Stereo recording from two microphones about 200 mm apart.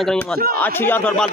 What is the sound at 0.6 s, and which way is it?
Speech, 10° left (ahead or behind).